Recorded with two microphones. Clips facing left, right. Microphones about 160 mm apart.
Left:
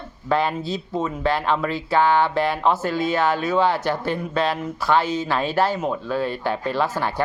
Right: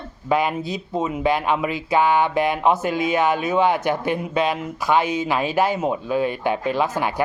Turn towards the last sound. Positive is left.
turn(degrees=-15)  # may be behind; listen again after turning